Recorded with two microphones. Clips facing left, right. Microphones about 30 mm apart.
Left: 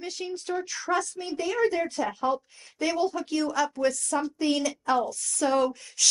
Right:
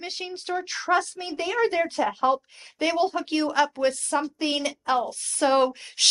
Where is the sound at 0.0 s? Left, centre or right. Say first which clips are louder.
Even; right.